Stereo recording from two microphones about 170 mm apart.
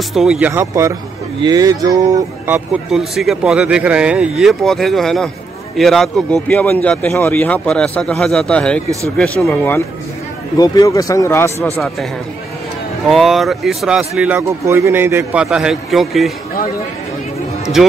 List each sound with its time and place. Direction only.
0.1 s speech: centre (ahead or behind)
0.5 s speech: 15° right (ahead or behind)
2.5 s speech: centre (ahead or behind)
10.6 s speech: 20° left (ahead or behind)
13.1 s speech: centre (ahead or behind)